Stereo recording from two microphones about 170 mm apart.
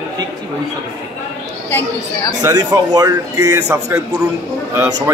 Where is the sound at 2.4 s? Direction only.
20° right (ahead or behind).